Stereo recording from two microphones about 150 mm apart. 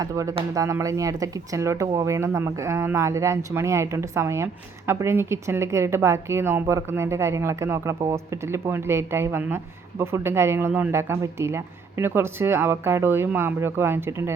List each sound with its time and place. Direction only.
0.0 s a woman's voice: 20° right (ahead or behind)